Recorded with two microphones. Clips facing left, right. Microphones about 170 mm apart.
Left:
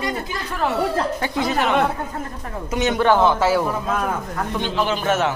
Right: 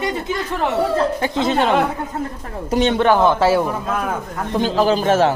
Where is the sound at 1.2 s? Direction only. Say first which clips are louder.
Right 3 dB; 25° right (ahead or behind).